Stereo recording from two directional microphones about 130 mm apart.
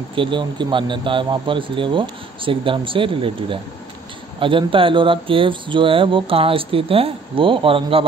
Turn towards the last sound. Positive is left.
turn(degrees=-45)  # may be behind; listen again after turning